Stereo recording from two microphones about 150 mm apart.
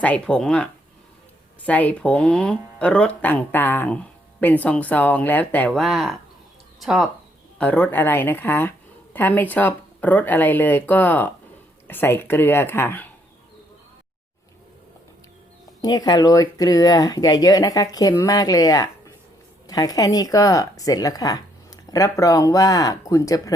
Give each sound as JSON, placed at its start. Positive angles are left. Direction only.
{"t": 0.0, "sound": "speech", "side_deg": 10}
{"t": 7.6, "sound": "speech", "side_deg": 10}
{"t": 15.8, "sound": "speech", "side_deg": 25}